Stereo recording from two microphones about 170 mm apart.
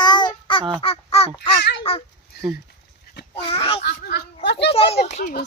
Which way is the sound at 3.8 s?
75° left (ahead or behind).